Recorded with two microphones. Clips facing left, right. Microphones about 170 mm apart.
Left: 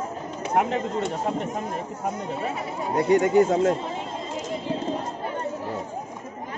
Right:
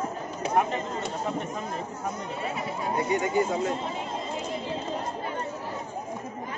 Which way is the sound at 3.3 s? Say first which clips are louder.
Left 6 dB; 65° left (ahead or behind).